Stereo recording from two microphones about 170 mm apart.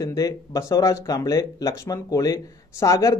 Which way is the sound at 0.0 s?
20° left (ahead or behind).